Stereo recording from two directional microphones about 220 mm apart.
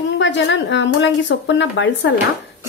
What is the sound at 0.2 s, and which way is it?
Speech, 55° left (ahead or behind).